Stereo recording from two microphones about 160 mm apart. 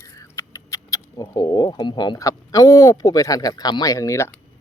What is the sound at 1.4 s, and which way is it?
Speech, 20° left (ahead or behind).